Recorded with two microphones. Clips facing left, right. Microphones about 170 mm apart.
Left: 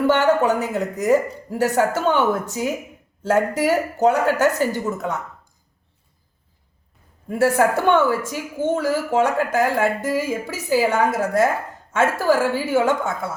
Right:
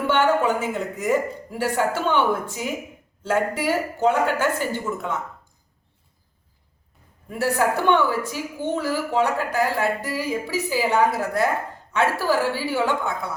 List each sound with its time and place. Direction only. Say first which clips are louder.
0.1 s speech: right 1 dB; 40° left (ahead or behind)
7.3 s a woman's voice: left 4 dB; 50° left (ahead or behind)